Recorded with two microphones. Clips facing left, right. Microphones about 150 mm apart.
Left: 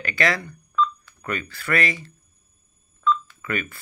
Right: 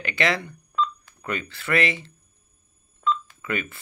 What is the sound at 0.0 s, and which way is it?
Speech, 20° right (ahead or behind).